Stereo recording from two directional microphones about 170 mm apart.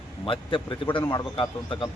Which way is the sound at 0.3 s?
30° left (ahead or behind).